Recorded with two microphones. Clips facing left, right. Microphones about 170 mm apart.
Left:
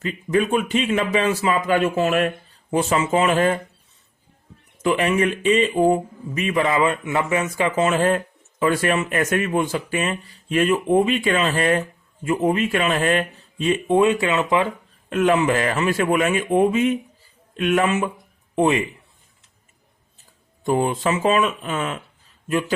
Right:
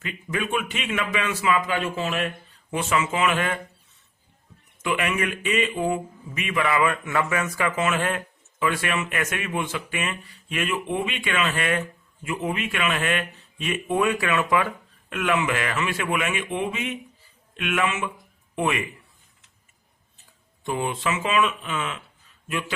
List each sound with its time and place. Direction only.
0.0 s speech: 35° left (ahead or behind)
4.8 s speech: 35° left (ahead or behind)
6.7 s speech: 20° left (ahead or behind)
15.1 s a man's voice: 35° left (ahead or behind)
20.7 s speech: 40° left (ahead or behind)